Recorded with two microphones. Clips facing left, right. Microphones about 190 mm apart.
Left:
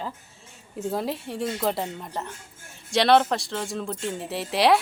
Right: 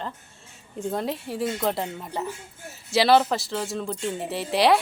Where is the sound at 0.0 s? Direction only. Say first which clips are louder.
Even; 5° left (ahead or behind).